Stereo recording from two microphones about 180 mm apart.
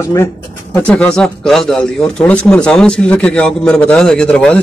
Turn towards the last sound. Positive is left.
turn(degrees=5)  # may be behind; listen again after turning